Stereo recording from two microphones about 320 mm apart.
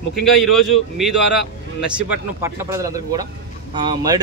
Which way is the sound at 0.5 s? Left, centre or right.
Centre.